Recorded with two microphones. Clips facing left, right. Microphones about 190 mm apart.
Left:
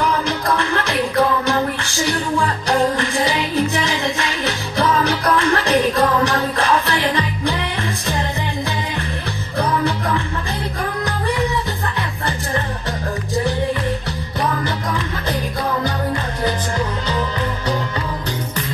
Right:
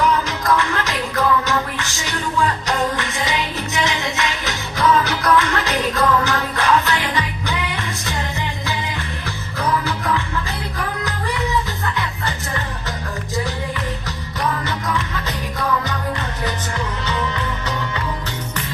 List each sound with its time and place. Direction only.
0.6 s music: 30° left (ahead or behind)
9.6 s music: 30° left (ahead or behind)